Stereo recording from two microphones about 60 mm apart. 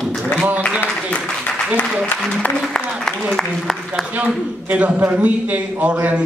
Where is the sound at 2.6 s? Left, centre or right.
Centre.